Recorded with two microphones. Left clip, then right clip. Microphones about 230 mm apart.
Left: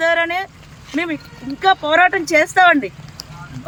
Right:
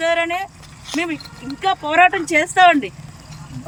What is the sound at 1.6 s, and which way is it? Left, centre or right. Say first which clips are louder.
Speech: left 1 dB; left.